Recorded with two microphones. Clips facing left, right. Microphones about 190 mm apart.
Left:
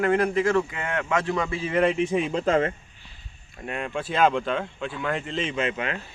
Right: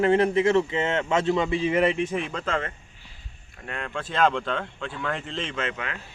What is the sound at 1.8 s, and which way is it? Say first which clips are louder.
Speech: left 2 dB; 5° left (ahead or behind).